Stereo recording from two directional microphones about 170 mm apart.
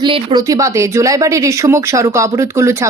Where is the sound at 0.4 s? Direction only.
20° right (ahead or behind).